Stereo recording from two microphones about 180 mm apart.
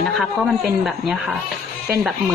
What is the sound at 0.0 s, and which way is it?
A woman's voice, centre (ahead or behind).